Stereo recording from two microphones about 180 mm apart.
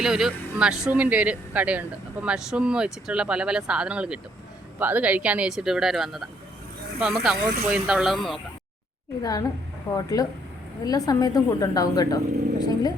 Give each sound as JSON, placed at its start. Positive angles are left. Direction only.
{"t": 0.0, "sound": "speech", "side_deg": -5}
{"t": 9.2, "sound": "speech", "side_deg": 20}